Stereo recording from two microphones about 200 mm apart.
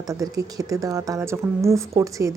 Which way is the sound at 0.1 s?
15° right (ahead or behind).